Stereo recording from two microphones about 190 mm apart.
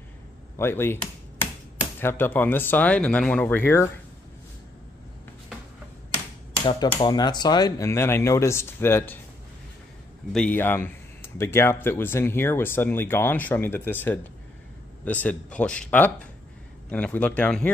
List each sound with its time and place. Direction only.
0.6 s speech: 10° left (ahead or behind)
2.0 s speech: 10° left (ahead or behind)
7.0 s speech: 20° left (ahead or behind)
10.3 s speech: 5° left (ahead or behind)